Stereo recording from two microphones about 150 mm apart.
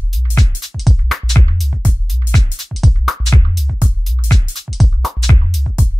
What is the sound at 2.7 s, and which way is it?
Music, centre (ahead or behind).